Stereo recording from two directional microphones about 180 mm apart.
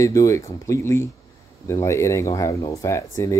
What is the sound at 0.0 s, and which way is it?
Speech, 15° left (ahead or behind).